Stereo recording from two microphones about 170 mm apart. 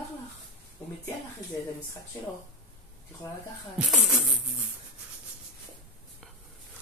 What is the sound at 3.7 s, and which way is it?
Speech, centre (ahead or behind).